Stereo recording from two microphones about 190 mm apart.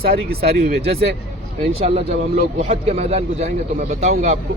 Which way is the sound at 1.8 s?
30° right (ahead or behind).